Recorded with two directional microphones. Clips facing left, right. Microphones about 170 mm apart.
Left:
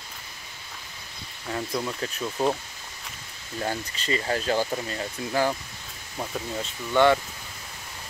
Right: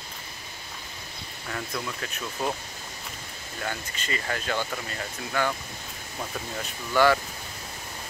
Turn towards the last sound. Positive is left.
turn(degrees=25)  # may be behind; listen again after turning